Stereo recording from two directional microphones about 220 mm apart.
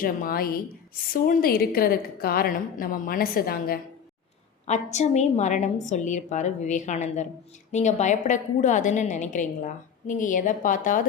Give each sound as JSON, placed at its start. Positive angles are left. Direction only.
{"t": 0.0, "sound": "a woman's voice", "side_deg": 40}
{"t": 4.6, "sound": "a woman's voice", "side_deg": 30}